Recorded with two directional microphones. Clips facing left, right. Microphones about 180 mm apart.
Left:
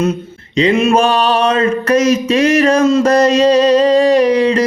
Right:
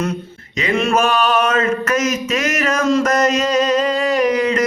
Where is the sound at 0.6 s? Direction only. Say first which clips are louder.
Left 5 dB; 25° left (ahead or behind).